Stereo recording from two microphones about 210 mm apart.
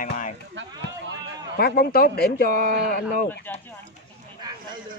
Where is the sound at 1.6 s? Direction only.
45° left (ahead or behind).